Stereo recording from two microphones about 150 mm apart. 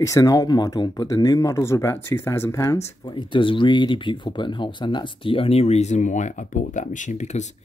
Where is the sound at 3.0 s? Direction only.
30° left (ahead or behind).